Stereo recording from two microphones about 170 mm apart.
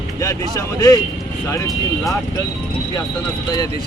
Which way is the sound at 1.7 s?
Centre (ahead or behind).